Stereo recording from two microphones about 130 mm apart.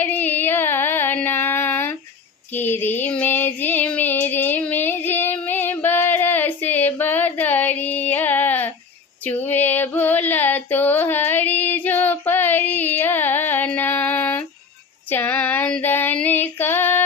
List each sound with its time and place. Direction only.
0.0 s a sound: 15° left (ahead or behind)
2.5 s child singing: 15° left (ahead or behind)
9.2 s female singing: 15° left (ahead or behind)